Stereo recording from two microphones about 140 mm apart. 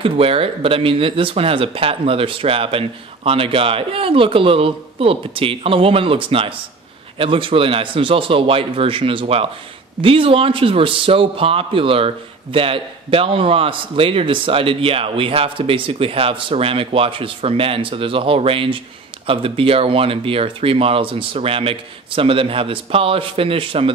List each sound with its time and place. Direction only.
0.0 s a man's voice: 40° right (ahead or behind)